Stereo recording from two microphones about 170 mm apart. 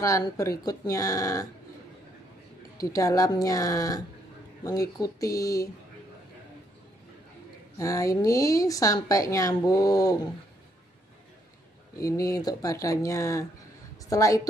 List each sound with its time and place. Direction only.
0.0 s speech: 20° left (ahead or behind)
2.8 s speech: 20° left (ahead or behind)
7.7 s speech: 20° left (ahead or behind)
12.0 s a woman's voice: 20° left (ahead or behind)